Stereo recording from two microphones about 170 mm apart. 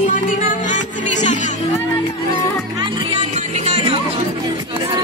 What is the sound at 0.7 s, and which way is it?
Music, 45° left (ahead or behind).